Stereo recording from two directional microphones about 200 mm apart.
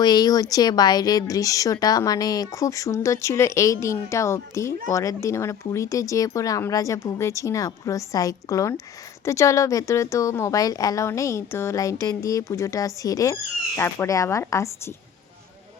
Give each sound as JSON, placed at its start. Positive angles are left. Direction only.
{"t": 0.0, "sound": "a woman's voice", "side_deg": 20}